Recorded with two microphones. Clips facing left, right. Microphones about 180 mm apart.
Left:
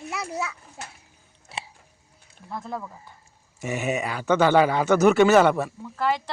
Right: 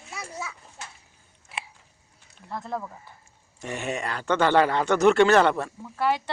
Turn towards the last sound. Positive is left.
turn(degrees=-5)  # may be behind; listen again after turning